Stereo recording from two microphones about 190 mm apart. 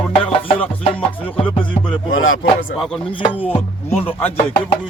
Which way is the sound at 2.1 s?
90° left.